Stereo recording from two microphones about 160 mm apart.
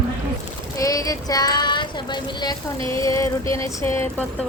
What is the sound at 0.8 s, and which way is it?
Child singing, 20° left (ahead or behind).